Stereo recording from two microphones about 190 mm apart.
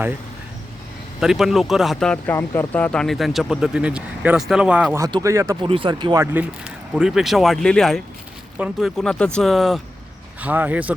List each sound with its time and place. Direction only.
1.2 s speech: centre (ahead or behind)
4.9 s speech: 20° right (ahead or behind)
5.6 s speech: 25° right (ahead or behind)
6.3 s speech: 5° right (ahead or behind)